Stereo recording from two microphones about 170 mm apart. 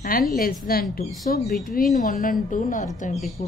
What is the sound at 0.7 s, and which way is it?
A woman's voice, 60° left (ahead or behind).